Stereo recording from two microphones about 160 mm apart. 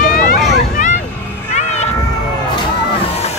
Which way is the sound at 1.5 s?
45° left (ahead or behind).